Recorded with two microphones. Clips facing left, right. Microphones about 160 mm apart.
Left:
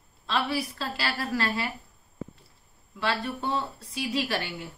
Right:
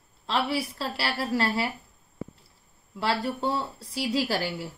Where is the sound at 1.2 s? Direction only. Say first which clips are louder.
Right 4 dB; 30° right (ahead or behind).